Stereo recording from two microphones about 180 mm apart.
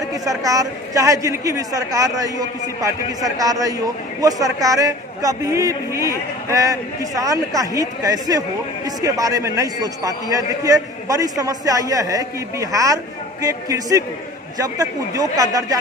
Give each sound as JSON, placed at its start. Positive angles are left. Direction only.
{"t": 0.0, "sound": "a man's voice", "side_deg": -20}